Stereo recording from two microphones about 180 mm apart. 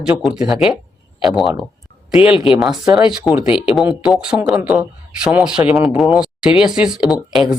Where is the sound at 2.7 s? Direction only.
20° right (ahead or behind).